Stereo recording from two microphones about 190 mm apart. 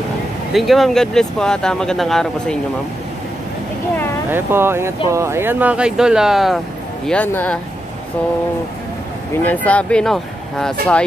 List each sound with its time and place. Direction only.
0.5 s speech: centre (ahead or behind)
4.3 s speech: 10° right (ahead or behind); by 7.5 s 5° left (ahead or behind)
9.4 s speech: 10° left (ahead or behind)